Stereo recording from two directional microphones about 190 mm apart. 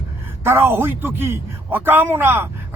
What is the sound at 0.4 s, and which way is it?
Speech, 10° right (ahead or behind).